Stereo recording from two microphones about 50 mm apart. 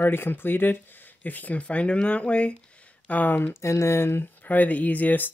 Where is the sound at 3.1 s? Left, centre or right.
Left.